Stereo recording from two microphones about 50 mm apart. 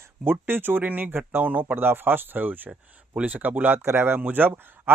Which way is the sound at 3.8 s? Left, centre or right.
Right.